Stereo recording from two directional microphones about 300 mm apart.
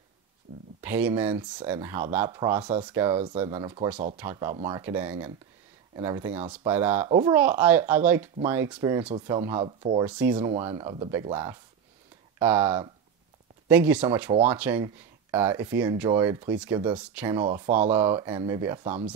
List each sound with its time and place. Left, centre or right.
0.7 s speech: centre
3.4 s speech: centre
10.0 s speech: centre
10.5 s speech: centre
17.5 s speech: right
17.9 s speech: centre